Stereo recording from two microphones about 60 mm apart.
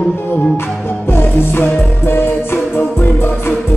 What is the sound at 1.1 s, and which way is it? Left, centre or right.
Music, left.